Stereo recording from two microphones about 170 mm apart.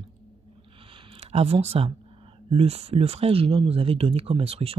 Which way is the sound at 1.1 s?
35° right (ahead or behind).